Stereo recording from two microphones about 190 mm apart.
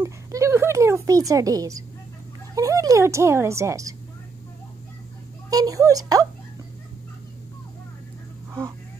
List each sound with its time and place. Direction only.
0.0 s a sound: 15° right (ahead or behind)
2.5 s a woman's voice: 20° right (ahead or behind)
5.5 s speech: 20° right (ahead or behind)